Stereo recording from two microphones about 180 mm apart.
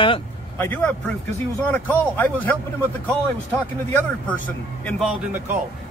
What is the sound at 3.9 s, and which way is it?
A man's voice, 10° left (ahead or behind).